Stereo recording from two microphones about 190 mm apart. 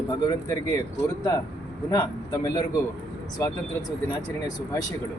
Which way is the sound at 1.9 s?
15° left (ahead or behind).